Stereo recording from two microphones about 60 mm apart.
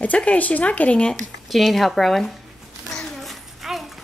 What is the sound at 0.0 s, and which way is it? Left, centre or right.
Speech, left.